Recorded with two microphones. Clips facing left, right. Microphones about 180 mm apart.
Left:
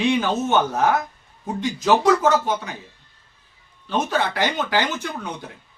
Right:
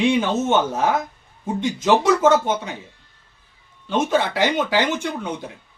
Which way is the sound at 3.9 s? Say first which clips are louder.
Right 3 dB; 20° right (ahead or behind).